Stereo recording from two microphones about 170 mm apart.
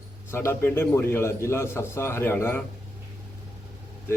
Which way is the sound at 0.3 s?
15° left (ahead or behind).